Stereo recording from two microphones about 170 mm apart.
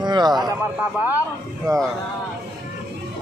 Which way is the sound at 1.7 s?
20° right (ahead or behind).